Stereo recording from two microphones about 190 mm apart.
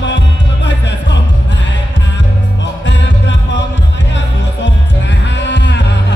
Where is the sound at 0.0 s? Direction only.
70° left (ahead or behind).